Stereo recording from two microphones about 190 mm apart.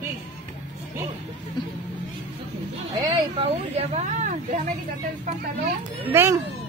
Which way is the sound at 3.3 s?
35° right (ahead or behind).